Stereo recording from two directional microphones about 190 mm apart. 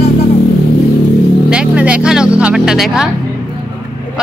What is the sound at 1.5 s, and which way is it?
Speech, 5° right (ahead or behind).